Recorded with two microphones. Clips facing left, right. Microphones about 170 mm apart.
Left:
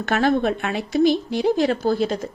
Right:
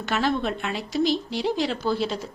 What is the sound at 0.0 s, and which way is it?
A woman's voice, 55° left (ahead or behind).